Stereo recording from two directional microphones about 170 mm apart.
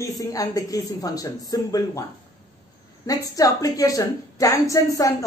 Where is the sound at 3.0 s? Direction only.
20° left (ahead or behind).